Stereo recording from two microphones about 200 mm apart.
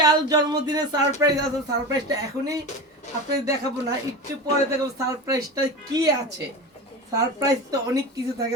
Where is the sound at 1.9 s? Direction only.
15° right (ahead or behind).